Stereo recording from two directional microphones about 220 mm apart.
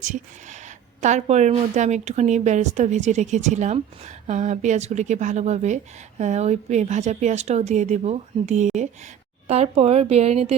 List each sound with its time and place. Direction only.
0.0 s a woman's voice: 35° right (ahead or behind)